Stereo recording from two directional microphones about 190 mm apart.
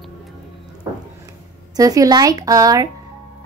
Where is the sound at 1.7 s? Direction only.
20° right (ahead or behind).